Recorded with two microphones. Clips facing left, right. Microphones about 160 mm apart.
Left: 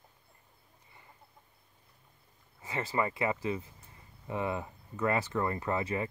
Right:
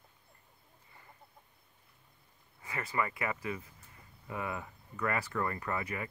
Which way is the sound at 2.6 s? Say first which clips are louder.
Left 3 dB; 25° left (ahead or behind).